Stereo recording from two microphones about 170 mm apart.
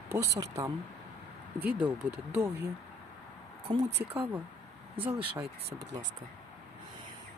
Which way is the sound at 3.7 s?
40° right (ahead or behind).